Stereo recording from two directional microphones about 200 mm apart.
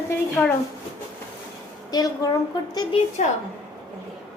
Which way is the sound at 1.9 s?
20° left (ahead or behind).